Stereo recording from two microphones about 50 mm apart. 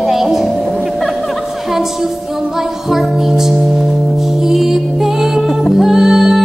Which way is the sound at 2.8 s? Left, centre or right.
Centre.